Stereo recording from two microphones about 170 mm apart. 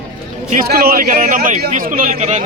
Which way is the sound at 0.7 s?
65° right (ahead or behind).